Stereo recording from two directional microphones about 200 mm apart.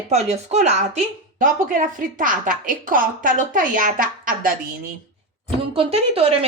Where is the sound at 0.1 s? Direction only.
35° right (ahead or behind).